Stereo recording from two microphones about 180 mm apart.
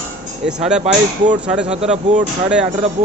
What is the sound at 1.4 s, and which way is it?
Speech, 5° right (ahead or behind).